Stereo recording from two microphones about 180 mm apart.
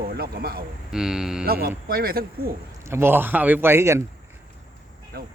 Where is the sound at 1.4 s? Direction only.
60° right (ahead or behind).